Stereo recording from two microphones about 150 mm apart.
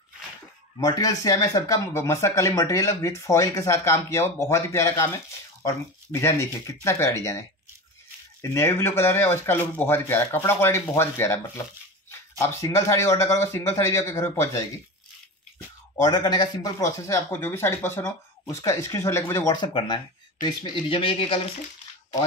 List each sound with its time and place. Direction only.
0.7 s speech: 25° left (ahead or behind)
16.0 s speech: 25° left (ahead or behind)
19.5 s speech: 30° left (ahead or behind)